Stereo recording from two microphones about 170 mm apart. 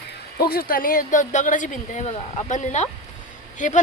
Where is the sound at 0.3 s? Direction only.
65° left (ahead or behind).